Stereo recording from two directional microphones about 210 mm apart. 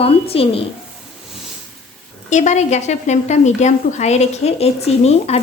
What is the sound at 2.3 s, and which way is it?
A woman's voice, 35° left (ahead or behind).